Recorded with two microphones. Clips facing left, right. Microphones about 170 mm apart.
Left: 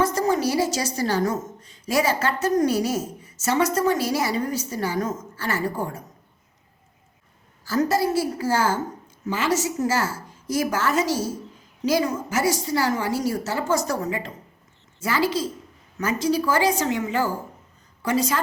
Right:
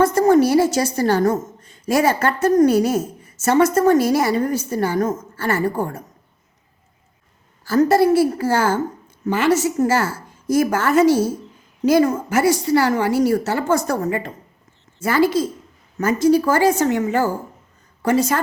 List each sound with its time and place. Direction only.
0.0 s a woman's voice: 55° right (ahead or behind)
7.6 s a woman's voice: 60° right (ahead or behind)